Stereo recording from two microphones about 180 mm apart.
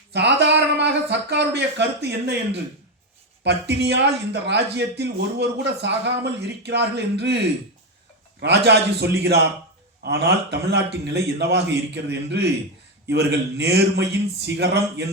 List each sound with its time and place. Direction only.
0.1 s speech: 70° right (ahead or behind)
8.4 s speech: 70° right (ahead or behind)